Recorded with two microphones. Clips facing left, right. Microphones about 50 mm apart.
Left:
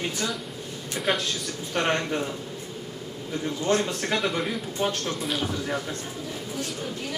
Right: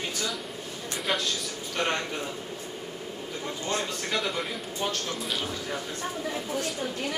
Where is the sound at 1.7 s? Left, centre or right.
Centre.